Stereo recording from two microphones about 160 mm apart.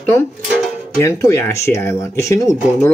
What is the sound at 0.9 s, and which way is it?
Speech, 20° left (ahead or behind).